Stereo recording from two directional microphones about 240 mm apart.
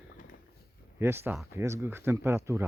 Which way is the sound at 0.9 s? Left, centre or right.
Centre.